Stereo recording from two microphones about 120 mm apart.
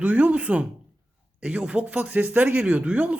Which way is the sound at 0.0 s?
10° right (ahead or behind).